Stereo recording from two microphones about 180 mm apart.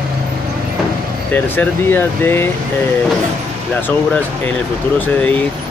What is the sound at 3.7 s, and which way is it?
Speech, 10° left (ahead or behind).